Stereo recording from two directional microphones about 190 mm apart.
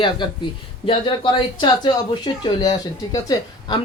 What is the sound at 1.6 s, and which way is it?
Speech, 25° left (ahead or behind).